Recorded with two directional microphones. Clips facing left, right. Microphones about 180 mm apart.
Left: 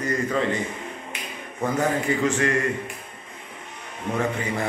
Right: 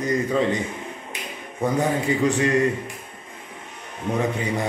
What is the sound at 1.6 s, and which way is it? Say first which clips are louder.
A man's voice: right 1 dB; 15° right (ahead or behind).